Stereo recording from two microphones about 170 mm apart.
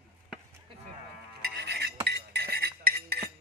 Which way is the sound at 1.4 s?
70° right (ahead or behind).